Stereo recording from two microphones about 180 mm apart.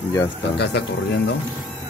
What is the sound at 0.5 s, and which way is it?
Speech, 70° left (ahead or behind).